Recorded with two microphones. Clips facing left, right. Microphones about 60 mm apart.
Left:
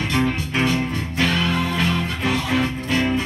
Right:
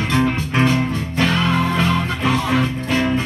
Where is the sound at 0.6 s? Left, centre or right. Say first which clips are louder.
Right 4 dB; right.